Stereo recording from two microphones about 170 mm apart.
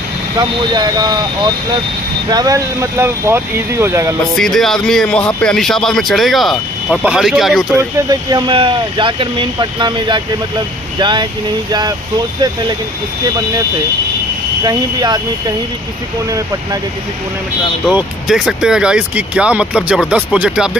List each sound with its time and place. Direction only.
0.4 s speech: 25° right (ahead or behind)
4.4 s speech: centre (ahead or behind)
7.7 s speech: 25° right (ahead or behind)
14.6 s speech: 25° right (ahead or behind)
17.8 s speech: 5° right (ahead or behind)